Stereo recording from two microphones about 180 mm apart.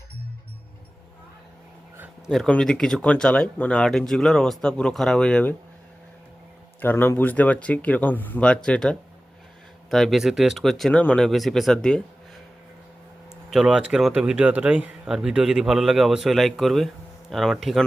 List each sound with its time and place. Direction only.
2.3 s speech: centre (ahead or behind)
6.8 s speech: 10° left (ahead or behind)
13.5 s speech: 5° right (ahead or behind)